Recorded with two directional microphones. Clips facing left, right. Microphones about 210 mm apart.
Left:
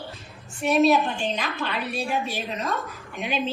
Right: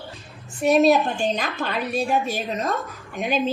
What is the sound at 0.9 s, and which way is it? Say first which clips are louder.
A woman's voice: right 3 dB; 45° right (ahead or behind).